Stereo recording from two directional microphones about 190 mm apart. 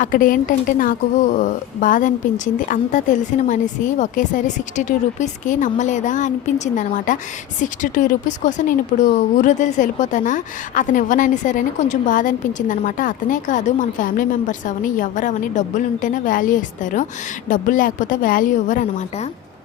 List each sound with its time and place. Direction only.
0.0 s a woman's voice: 45° left (ahead or behind)